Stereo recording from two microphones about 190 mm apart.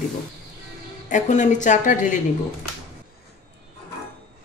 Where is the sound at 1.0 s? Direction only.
40° left (ahead or behind).